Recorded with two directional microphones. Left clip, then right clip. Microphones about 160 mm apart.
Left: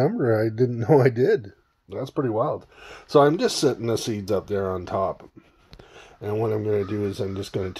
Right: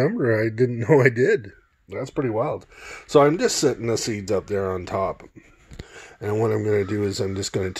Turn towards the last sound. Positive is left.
turn(degrees=-35)  # may be behind; listen again after turning